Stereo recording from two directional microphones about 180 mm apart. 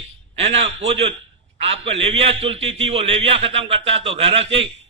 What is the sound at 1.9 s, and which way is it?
A man's voice, 35° right (ahead or behind).